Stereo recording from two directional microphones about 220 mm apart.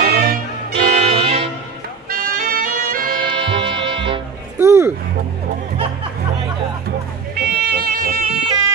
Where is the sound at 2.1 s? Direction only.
40° right (ahead or behind).